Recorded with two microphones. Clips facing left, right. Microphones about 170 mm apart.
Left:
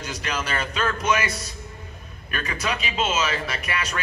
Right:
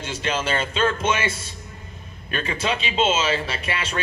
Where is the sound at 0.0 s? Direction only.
25° right (ahead or behind).